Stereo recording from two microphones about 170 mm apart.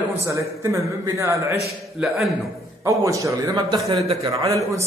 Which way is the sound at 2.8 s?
20° right (ahead or behind).